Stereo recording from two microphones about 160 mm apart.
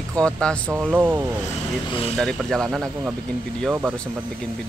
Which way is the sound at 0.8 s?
10° right (ahead or behind).